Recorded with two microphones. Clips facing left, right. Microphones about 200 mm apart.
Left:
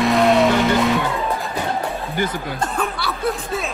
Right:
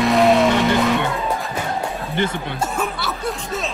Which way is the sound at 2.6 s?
5° right (ahead or behind).